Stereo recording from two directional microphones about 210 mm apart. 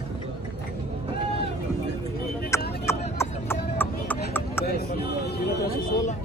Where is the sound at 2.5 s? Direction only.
15° left (ahead or behind).